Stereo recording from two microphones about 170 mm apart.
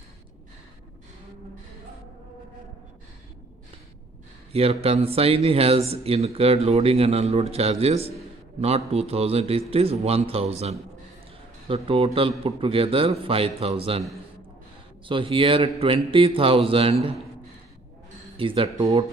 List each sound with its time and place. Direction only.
4.5 s speech: 35° right (ahead or behind)
15.0 s speech: 30° right (ahead or behind)
18.4 s speech: 30° right (ahead or behind)